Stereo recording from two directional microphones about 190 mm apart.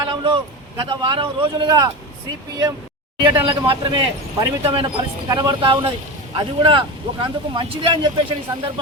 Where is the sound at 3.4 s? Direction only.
25° right (ahead or behind).